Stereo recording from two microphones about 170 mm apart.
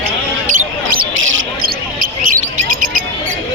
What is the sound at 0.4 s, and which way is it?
Basketball bounce, 55° right (ahead or behind).